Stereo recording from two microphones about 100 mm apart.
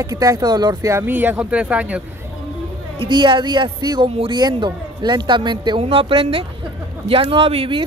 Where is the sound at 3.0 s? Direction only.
55° right (ahead or behind).